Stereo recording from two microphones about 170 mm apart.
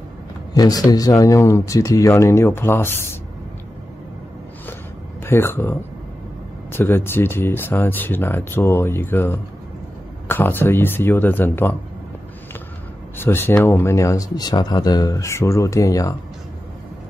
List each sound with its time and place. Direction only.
0.6 s speech: 20° left (ahead or behind)
5.2 s speech: 15° left (ahead or behind)
13.2 s speech: 15° left (ahead or behind)